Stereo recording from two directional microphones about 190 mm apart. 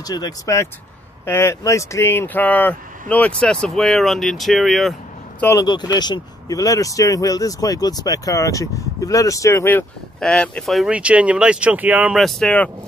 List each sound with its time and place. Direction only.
0.0 s speech: 20° left (ahead or behind); by 4.9 s centre (ahead or behind)
5.4 s speech: 15° left (ahead or behind)